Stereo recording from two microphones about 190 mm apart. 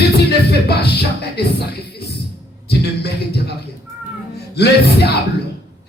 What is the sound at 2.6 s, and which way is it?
Speech, 60° left (ahead or behind).